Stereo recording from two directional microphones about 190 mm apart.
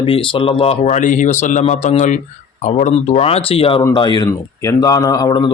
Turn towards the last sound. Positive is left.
turn(degrees=20)  # may be behind; listen again after turning